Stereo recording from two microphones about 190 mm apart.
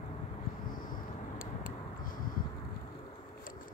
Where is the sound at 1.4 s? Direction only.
45° left (ahead or behind).